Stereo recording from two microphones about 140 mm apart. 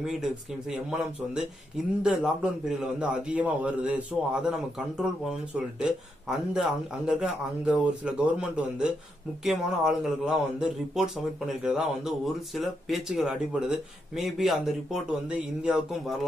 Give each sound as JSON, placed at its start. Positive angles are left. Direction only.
{"t": 0.0, "sound": "a man's voice", "side_deg": -5}